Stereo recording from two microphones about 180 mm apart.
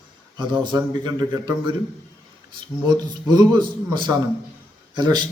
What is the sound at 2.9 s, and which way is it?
A man's voice, 25° right (ahead or behind).